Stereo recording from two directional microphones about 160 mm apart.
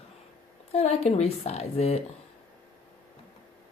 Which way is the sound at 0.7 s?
40° left (ahead or behind).